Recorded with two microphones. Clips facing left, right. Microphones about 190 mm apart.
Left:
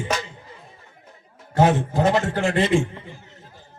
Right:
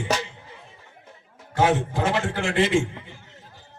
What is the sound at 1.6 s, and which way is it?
A man's voice, 40° left (ahead or behind).